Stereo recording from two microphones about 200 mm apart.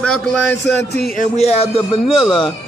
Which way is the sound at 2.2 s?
25° left (ahead or behind).